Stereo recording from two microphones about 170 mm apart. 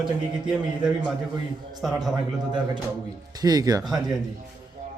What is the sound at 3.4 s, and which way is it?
Speech, 20° right (ahead or behind).